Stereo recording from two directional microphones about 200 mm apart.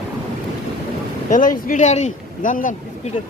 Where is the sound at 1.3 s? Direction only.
40° left (ahead or behind).